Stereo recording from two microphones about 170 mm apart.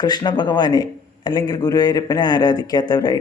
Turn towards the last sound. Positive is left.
turn(degrees=25)  # may be behind; listen again after turning